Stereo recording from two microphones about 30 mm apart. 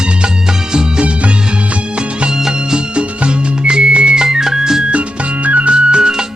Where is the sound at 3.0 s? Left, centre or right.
Right.